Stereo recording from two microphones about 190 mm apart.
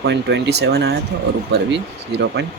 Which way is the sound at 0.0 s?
65° right (ahead or behind).